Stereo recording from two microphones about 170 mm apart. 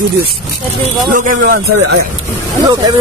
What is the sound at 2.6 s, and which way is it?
Speech, 25° right (ahead or behind).